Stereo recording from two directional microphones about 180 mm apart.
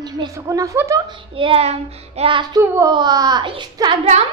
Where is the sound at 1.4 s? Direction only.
30° right (ahead or behind).